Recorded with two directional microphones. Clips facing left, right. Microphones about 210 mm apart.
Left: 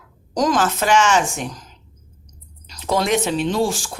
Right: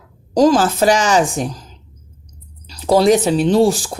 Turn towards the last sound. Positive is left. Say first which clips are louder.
# right 7 dB
turn(degrees=-35)  # may be behind; listen again after turning